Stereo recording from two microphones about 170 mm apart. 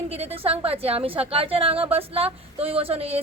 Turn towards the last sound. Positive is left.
turn(degrees=-35)  # may be behind; listen again after turning